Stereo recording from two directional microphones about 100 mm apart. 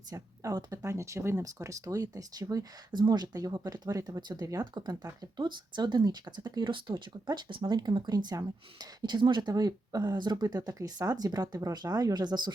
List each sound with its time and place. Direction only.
0.1 s speech: 35° right (ahead or behind)